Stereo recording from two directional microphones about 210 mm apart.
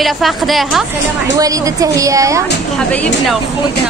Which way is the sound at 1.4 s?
15° right (ahead or behind).